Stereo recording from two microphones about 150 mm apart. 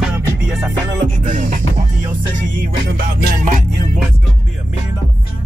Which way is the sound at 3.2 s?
65° right (ahead or behind).